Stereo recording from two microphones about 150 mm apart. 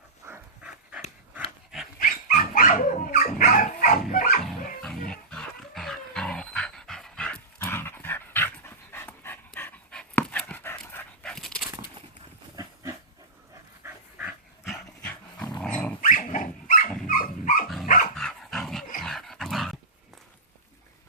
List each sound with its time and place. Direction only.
0.3 s dog: 10° right (ahead or behind)
2.0 s dog: 65° left (ahead or behind)
4.1 s music: 70° left (ahead or behind)
4.4 s dog: 5° left (ahead or behind)
13.8 s dog: 5° right (ahead or behind)
15.0 s dog: 10° left (ahead or behind)
16.0 s dog: 60° left (ahead or behind)
18.2 s dog: 5° left (ahead or behind)